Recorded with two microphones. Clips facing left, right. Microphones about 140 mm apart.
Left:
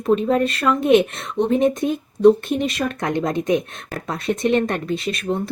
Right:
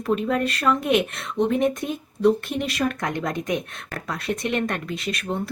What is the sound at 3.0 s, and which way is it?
Speech, 25° left (ahead or behind).